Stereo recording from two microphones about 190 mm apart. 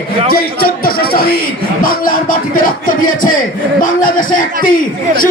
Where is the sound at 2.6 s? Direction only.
45° left (ahead or behind).